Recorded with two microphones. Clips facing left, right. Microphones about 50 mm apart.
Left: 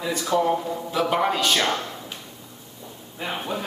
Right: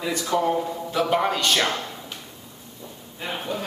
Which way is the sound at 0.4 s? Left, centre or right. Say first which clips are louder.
Left 1 dB; centre.